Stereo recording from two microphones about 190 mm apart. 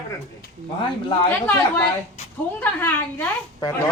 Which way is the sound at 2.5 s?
10° left (ahead or behind).